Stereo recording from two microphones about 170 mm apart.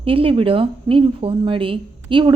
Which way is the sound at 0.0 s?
35° right (ahead or behind).